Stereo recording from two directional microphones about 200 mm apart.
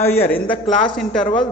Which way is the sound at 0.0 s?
10° left (ahead or behind).